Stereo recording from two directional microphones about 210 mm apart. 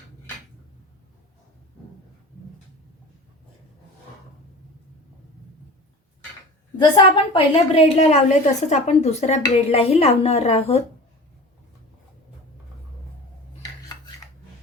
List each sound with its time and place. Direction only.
6.7 s a woman's voice: 20° left (ahead or behind)